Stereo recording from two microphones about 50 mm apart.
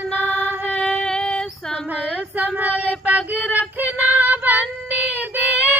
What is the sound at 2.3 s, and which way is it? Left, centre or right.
Female singing, right.